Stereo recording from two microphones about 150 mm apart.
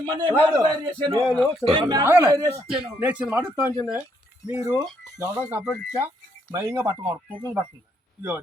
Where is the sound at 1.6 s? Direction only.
35° right (ahead or behind).